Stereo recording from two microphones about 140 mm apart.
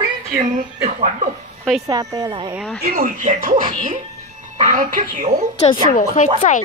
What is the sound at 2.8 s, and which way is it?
Speech, 85° right.